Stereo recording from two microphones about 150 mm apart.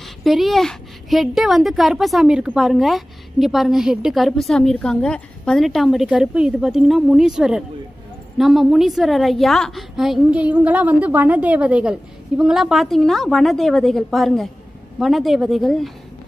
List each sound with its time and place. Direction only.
0.0 s a woman's voice: centre (ahead or behind)